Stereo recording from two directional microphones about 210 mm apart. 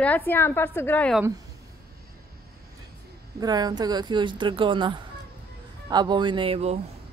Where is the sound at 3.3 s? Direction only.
20° right (ahead or behind).